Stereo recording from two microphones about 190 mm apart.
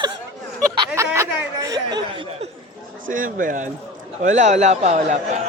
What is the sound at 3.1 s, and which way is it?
A man's voice, 45° right (ahead or behind).